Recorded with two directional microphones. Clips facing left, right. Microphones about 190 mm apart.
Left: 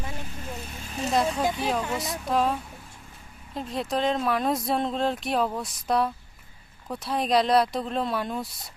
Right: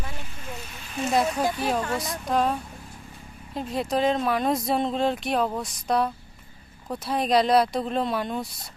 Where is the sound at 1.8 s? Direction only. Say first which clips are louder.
Right 1 dB; 5° left (ahead or behind).